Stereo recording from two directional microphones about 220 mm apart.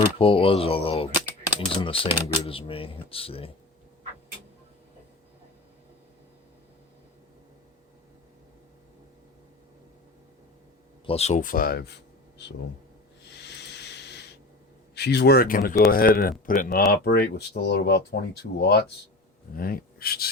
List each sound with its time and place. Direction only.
0.2 s speech: 25° left (ahead or behind)
11.0 s speech: 25° left (ahead or behind); by 11.9 s 45° left (ahead or behind)
13.4 s a sound: 50° left (ahead or behind)
14.9 s speech: 50° left (ahead or behind)